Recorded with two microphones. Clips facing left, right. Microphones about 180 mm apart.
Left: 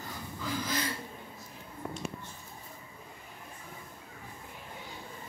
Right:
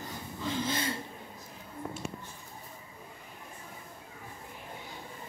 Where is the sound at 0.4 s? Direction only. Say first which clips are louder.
Right 2 dB; 25° right (ahead or behind).